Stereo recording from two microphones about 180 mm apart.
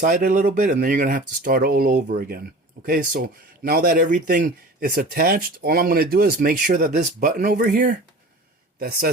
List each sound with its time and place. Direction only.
0.0 s a man's voice: 50° right (ahead or behind)